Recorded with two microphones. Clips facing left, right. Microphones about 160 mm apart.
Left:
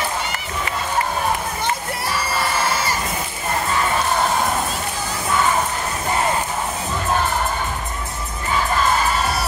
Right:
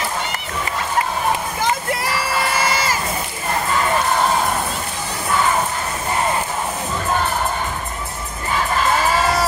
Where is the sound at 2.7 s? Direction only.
90° right.